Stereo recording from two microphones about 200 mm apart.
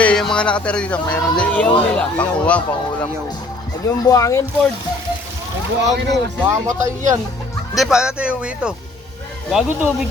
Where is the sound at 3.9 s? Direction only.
15° left (ahead or behind).